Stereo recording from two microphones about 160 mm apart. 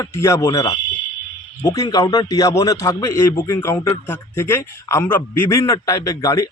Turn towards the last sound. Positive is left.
turn(degrees=20)  # may be behind; listen again after turning